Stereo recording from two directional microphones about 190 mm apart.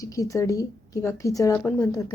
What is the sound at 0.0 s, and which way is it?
A woman's voice, 15° left (ahead or behind).